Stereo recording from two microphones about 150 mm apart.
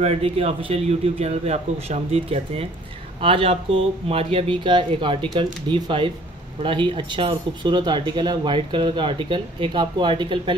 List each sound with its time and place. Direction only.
0.0 s speech: 45° right (ahead or behind)